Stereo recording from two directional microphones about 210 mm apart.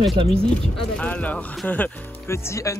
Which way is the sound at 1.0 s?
5° left (ahead or behind).